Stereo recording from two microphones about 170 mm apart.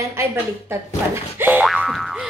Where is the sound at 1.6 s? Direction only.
Centre (ahead or behind).